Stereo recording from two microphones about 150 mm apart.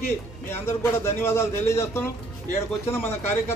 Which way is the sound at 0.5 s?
15° left (ahead or behind).